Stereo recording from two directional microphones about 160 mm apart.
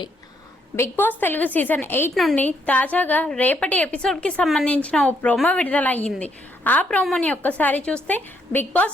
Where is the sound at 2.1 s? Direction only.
Centre (ahead or behind).